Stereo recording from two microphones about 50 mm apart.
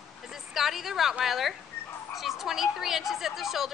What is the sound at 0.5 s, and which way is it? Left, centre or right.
A woman's voice, centre.